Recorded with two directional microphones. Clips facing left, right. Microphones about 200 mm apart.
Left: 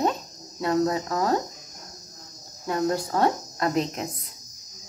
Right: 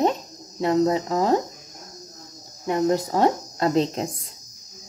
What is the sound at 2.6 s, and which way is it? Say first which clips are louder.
A woman's voice: right 4 dB; 20° right (ahead or behind).